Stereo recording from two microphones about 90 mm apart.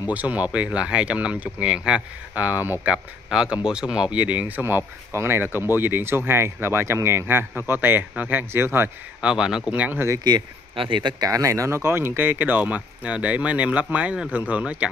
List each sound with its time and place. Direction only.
0.1 s speech: 15° right (ahead or behind)
2.9 s speech: 10° right (ahead or behind); by 8.9 s 25° right (ahead or behind)
9.2 s speech: 10° right (ahead or behind)
9.9 s speech: 35° right (ahead or behind)
10.8 s speech: 60° right (ahead or behind)
11.2 s speech: 35° right (ahead or behind); by 14.9 s 15° right (ahead or behind)